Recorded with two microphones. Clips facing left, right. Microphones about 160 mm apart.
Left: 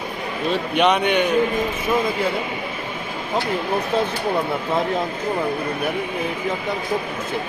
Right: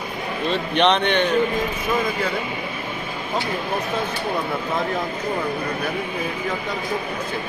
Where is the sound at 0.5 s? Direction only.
10° left (ahead or behind).